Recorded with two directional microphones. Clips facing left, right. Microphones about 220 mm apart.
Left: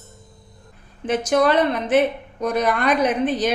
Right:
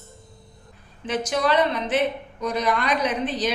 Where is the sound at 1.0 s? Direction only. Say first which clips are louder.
Left 5 dB; 50° left (ahead or behind).